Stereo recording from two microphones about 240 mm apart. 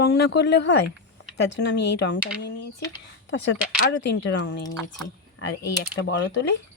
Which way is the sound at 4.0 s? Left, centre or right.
Left.